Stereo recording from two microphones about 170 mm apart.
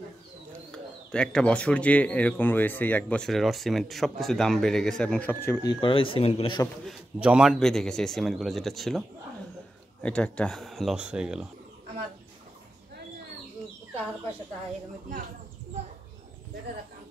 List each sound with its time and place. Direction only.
0.7 s speech: 5° left (ahead or behind); by 6.7 s 30° left (ahead or behind)
6.8 s a man's voice: 5° right (ahead or behind)
10.0 s a man's voice: 5° left (ahead or behind)